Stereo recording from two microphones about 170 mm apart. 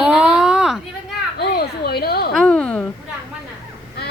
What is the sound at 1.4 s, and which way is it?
Speech, 70° left (ahead or behind).